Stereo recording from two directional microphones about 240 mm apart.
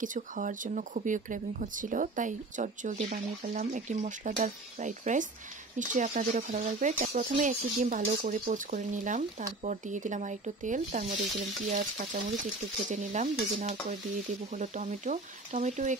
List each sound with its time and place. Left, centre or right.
0.0 s speech: right
12.8 s stir: right
14.5 s speech: right